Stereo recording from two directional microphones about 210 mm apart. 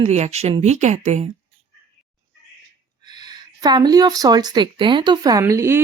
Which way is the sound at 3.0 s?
20° right (ahead or behind).